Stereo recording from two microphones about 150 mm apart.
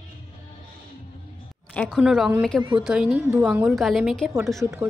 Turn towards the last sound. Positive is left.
turn(degrees=-15)  # may be behind; listen again after turning